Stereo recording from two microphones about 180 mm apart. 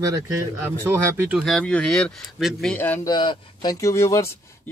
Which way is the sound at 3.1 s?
25° left (ahead or behind).